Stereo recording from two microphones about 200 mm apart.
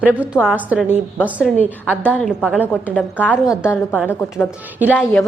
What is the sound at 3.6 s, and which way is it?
Speech, 10° left (ahead or behind).